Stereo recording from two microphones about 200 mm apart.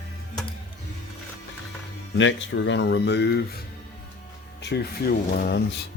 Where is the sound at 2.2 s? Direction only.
65° left (ahead or behind).